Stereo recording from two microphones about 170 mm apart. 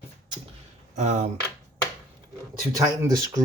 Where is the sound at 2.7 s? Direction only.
20° right (ahead or behind).